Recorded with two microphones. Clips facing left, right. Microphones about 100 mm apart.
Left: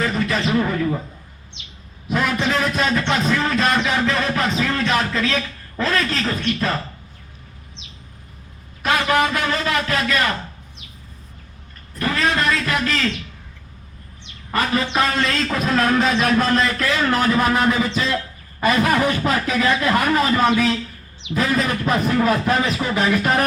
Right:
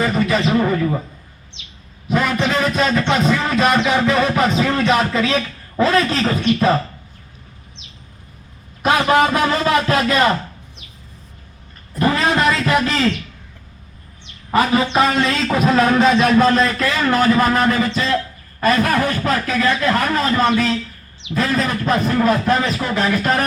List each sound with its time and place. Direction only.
0.0 s a sound: 10° right (ahead or behind)
2.0 s a man's voice: centre (ahead or behind)
4.6 s music: 10° right (ahead or behind)
5.7 s music: 15° right (ahead or behind)
8.8 s speech: 25° right (ahead or behind)
11.9 s a sound: 20° right (ahead or behind)
14.5 s music: 15° right (ahead or behind)
16.5 s a man's voice: centre (ahead or behind)